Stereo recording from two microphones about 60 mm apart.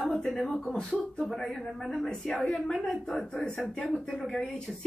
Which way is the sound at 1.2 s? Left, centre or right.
Centre.